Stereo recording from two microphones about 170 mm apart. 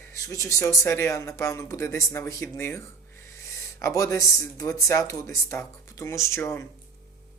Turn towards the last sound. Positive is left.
turn(degrees=15)  # may be behind; listen again after turning